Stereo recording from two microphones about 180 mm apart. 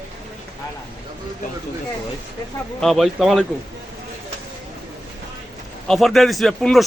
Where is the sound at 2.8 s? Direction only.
Centre (ahead or behind).